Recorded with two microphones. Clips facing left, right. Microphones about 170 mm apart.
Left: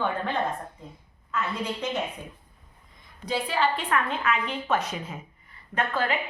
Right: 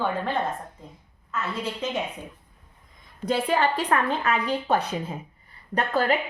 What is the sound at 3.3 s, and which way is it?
A woman's voice, 50° right (ahead or behind).